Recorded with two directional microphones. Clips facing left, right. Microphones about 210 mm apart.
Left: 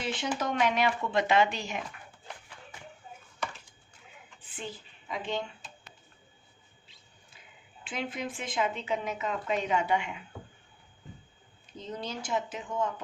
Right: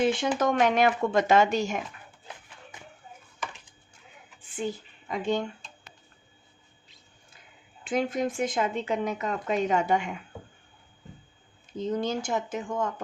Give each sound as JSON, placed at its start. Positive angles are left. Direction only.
{"t": 0.0, "sound": "a woman's voice", "side_deg": -50}
{"t": 5.1, "sound": "a woman's voice", "side_deg": -45}
{"t": 7.9, "sound": "a woman's voice", "side_deg": -45}
{"t": 11.8, "sound": "a woman's voice", "side_deg": -45}